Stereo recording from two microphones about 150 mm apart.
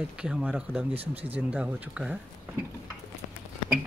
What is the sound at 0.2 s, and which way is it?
Speech, 5° right (ahead or behind).